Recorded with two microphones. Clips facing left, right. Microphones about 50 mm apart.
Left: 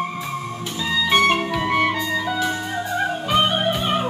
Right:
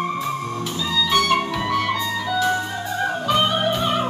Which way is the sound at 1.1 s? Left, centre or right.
Left.